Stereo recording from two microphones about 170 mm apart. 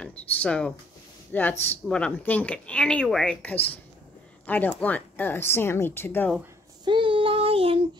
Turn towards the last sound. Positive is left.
turn(degrees=-30)  # may be behind; listen again after turning